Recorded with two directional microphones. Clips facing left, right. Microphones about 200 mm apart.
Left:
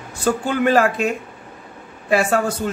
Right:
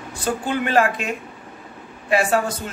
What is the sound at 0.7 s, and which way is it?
Speech, 40° left (ahead or behind).